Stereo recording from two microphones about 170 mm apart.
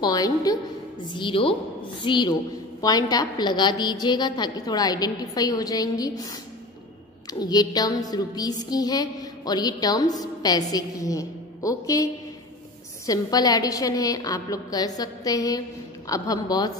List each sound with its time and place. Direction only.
0.0 s music: 20° left (ahead or behind)
1.1 s a woman's voice: 30° left (ahead or behind)
2.0 s music: 25° left (ahead or behind)